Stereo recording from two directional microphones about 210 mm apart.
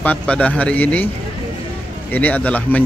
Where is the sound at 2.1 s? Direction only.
5° left (ahead or behind).